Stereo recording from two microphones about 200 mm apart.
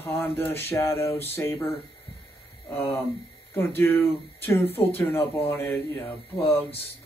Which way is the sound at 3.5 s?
10° left (ahead or behind).